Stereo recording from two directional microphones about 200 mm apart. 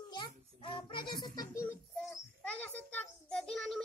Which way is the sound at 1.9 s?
5° left (ahead or behind).